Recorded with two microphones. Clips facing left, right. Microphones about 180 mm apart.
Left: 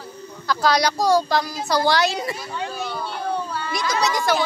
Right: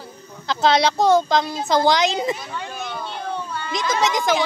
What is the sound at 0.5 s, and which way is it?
Speech, 25° right (ahead or behind).